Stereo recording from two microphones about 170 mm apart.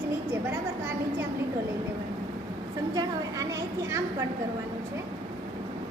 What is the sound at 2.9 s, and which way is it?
A woman's voice, 20° right (ahead or behind).